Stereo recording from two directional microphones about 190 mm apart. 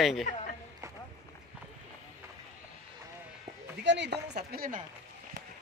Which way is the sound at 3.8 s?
65° right (ahead or behind).